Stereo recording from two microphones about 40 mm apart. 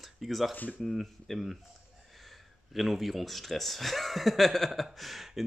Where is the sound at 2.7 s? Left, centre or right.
Centre.